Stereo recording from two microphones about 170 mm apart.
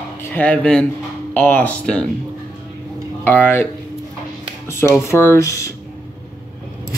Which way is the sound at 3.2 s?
10° left (ahead or behind).